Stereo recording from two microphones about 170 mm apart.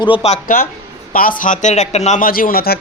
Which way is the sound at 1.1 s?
55° left (ahead or behind).